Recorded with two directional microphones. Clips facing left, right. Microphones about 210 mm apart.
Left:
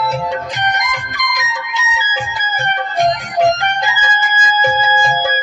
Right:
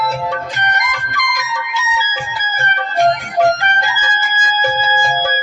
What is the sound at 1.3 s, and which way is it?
Music, 15° left (ahead or behind).